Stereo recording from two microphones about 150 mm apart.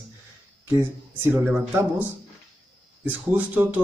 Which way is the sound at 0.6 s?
15° right (ahead or behind).